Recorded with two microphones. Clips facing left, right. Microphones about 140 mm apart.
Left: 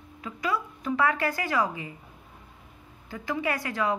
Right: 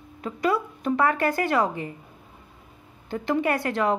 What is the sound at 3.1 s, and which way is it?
Speech, 55° right (ahead or behind).